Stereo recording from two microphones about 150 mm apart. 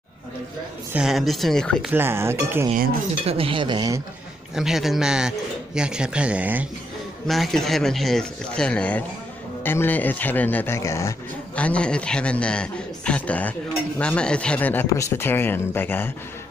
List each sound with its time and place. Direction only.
0.9 s speech: centre (ahead or behind)
1.9 s speech: 15° right (ahead or behind)
3.3 s speech: 40° right (ahead or behind)
4.6 s a man's voice: centre (ahead or behind); by 11.1 s 20° left (ahead or behind)
11.5 s a man's voice: 10° left (ahead or behind)